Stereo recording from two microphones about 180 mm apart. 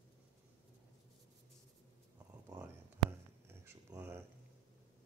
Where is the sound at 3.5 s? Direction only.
15° right (ahead or behind).